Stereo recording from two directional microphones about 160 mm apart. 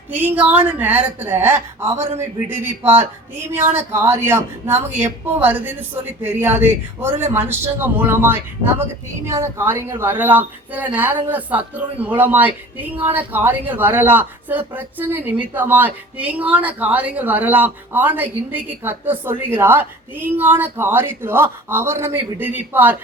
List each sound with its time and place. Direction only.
0.1 s a woman's voice: 10° right (ahead or behind)